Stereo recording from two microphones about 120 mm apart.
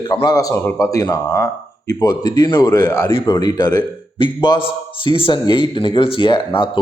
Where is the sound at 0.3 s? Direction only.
30° left (ahead or behind).